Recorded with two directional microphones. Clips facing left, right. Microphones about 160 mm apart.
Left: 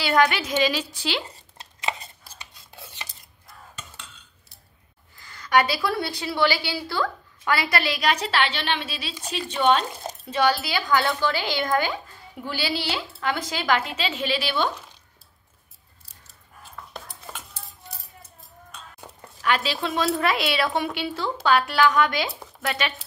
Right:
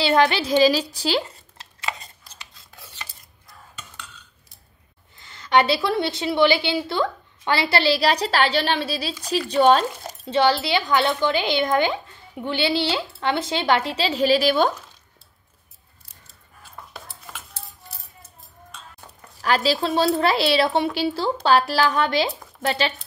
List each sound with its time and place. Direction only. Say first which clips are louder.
0.0 s a woman's voice: right 2 dB; 30° right (ahead or behind)
5.1 s a woman's voice: right 2 dB; 25° right (ahead or behind)
10.2 s a woman's voice: right 3 dB; 25° right (ahead or behind)
19.4 s a woman's voice: right 4 dB; 35° right (ahead or behind)